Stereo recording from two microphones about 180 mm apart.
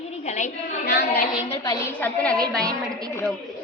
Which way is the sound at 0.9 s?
55° left (ahead or behind).